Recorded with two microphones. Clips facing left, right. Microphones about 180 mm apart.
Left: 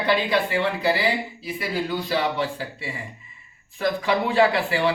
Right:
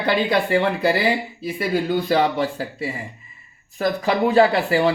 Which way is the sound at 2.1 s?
45° right (ahead or behind).